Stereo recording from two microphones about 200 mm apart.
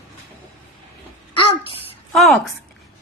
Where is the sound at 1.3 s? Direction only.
25° left (ahead or behind).